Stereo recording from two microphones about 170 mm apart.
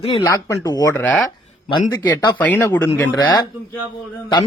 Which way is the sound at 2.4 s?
10° left (ahead or behind).